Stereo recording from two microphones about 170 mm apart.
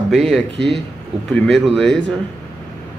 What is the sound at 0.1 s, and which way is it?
Speech, centre (ahead or behind).